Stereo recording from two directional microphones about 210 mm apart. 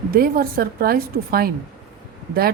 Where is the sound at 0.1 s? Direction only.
45° right (ahead or behind).